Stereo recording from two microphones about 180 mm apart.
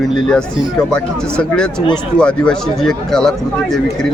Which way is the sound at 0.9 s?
5° left (ahead or behind).